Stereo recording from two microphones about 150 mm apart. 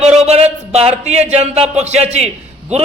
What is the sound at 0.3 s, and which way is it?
A man's voice, 45° right (ahead or behind).